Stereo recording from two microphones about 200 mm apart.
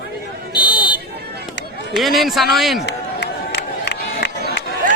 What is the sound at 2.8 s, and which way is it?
Crowd, 60° left (ahead or behind).